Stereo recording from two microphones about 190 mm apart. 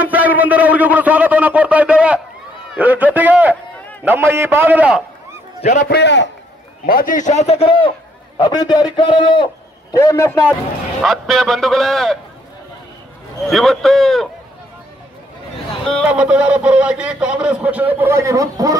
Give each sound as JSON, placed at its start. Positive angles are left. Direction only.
{"t": 0.0, "sound": "a man's voice", "side_deg": -10}
{"t": 5.6, "sound": "a man's voice", "side_deg": 40}
{"t": 5.9, "sound": "a man's voice", "side_deg": 65}
{"t": 6.9, "sound": "a man's voice", "side_deg": 45}
{"t": 11.0, "sound": "a man's voice", "side_deg": 0}
{"t": 13.5, "sound": "a man's voice", "side_deg": 0}
{"t": 16.1, "sound": "a man's voice", "side_deg": -5}